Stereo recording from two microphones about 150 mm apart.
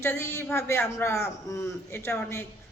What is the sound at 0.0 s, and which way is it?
A woman's voice, 15° left (ahead or behind).